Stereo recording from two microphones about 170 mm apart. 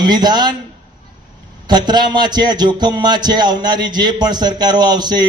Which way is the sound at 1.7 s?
25° right (ahead or behind).